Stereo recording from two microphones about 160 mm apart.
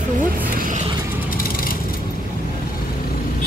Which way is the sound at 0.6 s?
55° right (ahead or behind).